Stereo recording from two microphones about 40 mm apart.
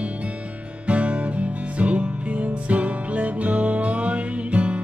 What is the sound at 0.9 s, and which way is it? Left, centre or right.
Music, right.